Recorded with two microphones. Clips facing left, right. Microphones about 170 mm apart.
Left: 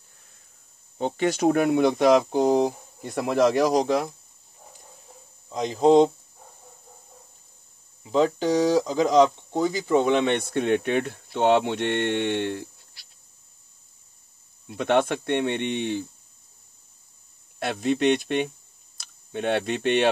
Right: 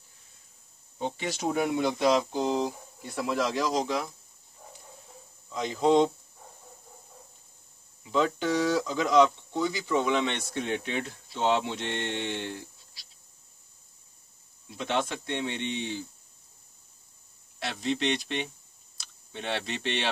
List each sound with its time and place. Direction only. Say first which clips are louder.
0.9 s speech: left 8 dB; 60° left (ahead or behind)
5.5 s speech: left 5 dB; 40° left (ahead or behind)
8.0 s speech: left 5 dB; 35° left (ahead or behind); by 13.0 s 60° left (ahead or behind)
14.7 s speech: left 8 dB; 55° left (ahead or behind)
17.6 s speech: left 6 dB; 55° left (ahead or behind)